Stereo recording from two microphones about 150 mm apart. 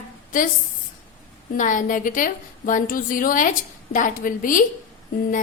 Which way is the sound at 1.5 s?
60° left (ahead or behind).